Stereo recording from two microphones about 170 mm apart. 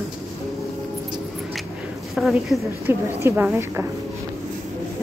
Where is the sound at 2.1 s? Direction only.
Centre (ahead or behind).